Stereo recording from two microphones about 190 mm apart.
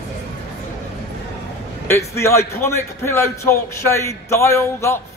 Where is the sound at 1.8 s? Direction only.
15° left (ahead or behind).